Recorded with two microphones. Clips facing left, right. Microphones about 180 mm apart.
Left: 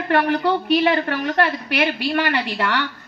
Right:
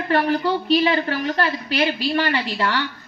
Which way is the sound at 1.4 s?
65° left (ahead or behind).